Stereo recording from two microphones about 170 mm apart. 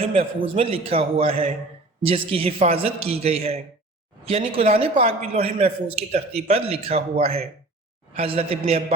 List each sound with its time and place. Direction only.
0.0 s a man's voice: 35° right (ahead or behind)